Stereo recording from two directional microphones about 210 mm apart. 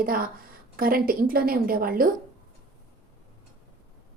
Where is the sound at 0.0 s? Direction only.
45° right (ahead or behind).